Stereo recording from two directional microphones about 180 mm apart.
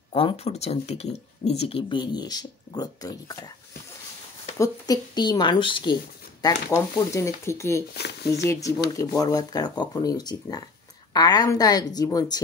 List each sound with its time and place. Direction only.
0.1 s speech: 30° left (ahead or behind)
4.6 s speech: 20° left (ahead or behind)